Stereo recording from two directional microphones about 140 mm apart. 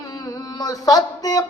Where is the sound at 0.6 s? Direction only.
25° left (ahead or behind).